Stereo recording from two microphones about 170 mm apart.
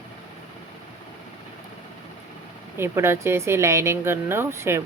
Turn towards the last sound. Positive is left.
turn(degrees=-15)  # may be behind; listen again after turning